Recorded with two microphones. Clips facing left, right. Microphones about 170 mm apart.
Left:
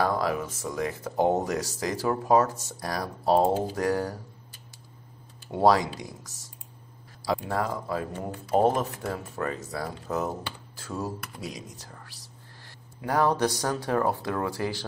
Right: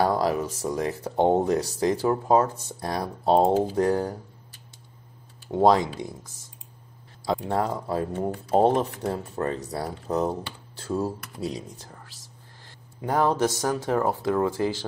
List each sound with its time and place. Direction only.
0.0 s speech: 35° right (ahead or behind)
5.6 s speech: 20° right (ahead or behind)
7.4 s speech: 30° right (ahead or behind)
13.0 s speech: 20° right (ahead or behind)